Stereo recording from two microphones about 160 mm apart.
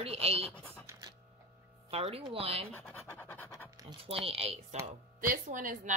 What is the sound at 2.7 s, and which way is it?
Scratch, 10° left (ahead or behind).